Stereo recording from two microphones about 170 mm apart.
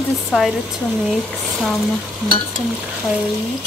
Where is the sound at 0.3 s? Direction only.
Centre (ahead or behind).